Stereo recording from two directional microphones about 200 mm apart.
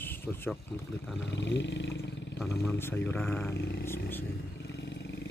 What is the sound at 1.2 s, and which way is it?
Speech, 65° left (ahead or behind).